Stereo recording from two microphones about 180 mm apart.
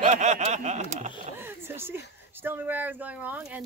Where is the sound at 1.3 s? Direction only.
10° right (ahead or behind).